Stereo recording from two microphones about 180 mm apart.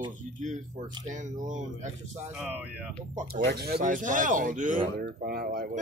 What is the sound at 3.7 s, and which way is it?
Speech, 45° right (ahead or behind).